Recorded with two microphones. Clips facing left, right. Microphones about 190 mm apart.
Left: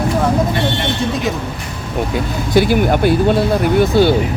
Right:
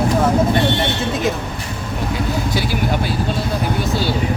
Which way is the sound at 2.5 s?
55° left (ahead or behind).